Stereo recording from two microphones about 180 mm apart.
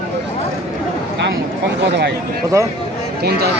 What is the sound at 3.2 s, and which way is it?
Speech, 60° right (ahead or behind).